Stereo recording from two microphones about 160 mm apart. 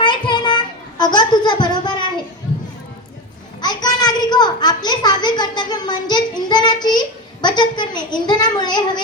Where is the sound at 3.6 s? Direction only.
25° left (ahead or behind).